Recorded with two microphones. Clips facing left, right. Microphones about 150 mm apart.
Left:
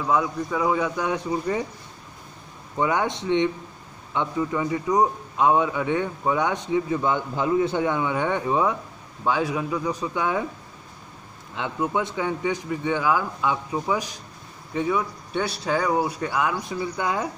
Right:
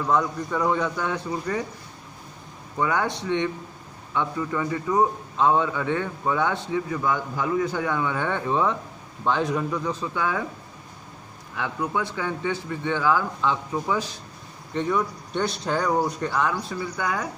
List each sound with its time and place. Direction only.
0.0 s a man's voice: 5° left (ahead or behind)
2.8 s a man's voice: 20° left (ahead or behind)
11.5 s a man's voice: 20° left (ahead or behind)